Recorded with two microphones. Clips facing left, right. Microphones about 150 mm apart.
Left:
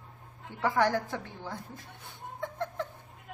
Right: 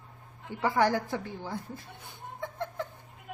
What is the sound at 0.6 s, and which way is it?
A woman's voice, 10° right (ahead or behind).